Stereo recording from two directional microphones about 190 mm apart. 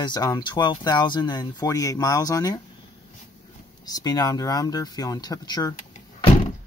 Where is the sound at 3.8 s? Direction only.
20° left (ahead or behind).